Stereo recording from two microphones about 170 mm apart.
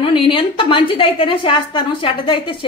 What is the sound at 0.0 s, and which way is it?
A woman's voice, 30° left (ahead or behind).